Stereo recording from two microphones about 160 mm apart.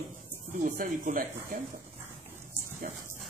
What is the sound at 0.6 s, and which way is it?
Speech, 55° right (ahead or behind).